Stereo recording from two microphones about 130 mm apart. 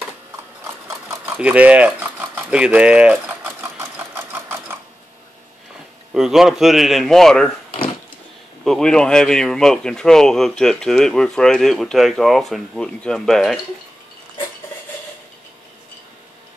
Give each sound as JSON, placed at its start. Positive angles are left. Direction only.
{"t": 1.2, "sound": "speech", "side_deg": -10}
{"t": 3.3, "sound": "sewing machine", "side_deg": -20}
{"t": 6.1, "sound": "speech", "side_deg": -5}
{"t": 8.6, "sound": "speech", "side_deg": 5}